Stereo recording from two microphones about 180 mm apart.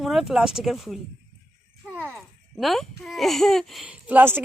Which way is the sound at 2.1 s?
Centre (ahead or behind).